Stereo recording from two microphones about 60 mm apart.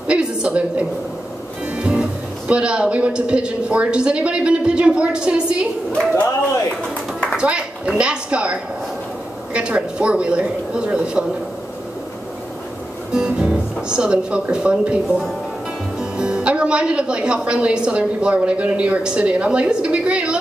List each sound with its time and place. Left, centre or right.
0.0 s a sound: centre
1.8 s speech: centre
7.3 s a woman's voice: centre
13.1 s music: centre
14.5 s speech: centre